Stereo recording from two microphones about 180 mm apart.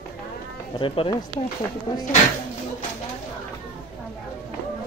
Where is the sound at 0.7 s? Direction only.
30° left (ahead or behind).